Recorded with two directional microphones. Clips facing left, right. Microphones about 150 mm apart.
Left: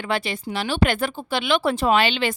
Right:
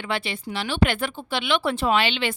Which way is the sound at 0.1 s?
40° left (ahead or behind).